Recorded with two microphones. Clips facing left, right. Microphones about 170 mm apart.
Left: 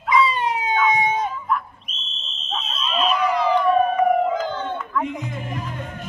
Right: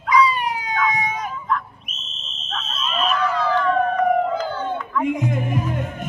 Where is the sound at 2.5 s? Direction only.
Centre (ahead or behind).